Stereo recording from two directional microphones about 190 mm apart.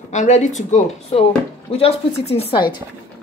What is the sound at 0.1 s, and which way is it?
Speech, 40° left (ahead or behind).